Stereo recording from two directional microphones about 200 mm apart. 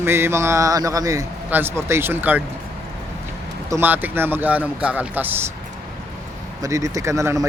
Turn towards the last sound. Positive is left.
turn(degrees=-15)  # may be behind; listen again after turning